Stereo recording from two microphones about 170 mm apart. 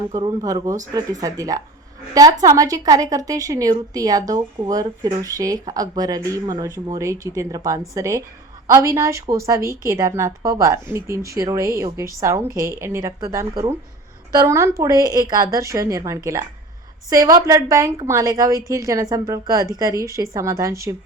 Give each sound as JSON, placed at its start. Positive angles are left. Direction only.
{"t": 0.1, "sound": "a woman's voice", "side_deg": -20}
{"t": 14.3, "sound": "a woman's voice", "side_deg": -15}